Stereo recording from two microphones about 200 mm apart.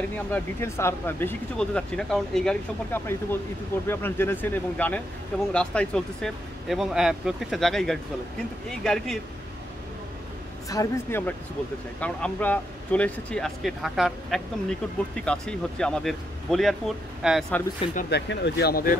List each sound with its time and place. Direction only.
0.3 s speech: 15° left (ahead or behind)
10.7 s speech: 15° left (ahead or behind)
18.1 s speech: 60° left (ahead or behind)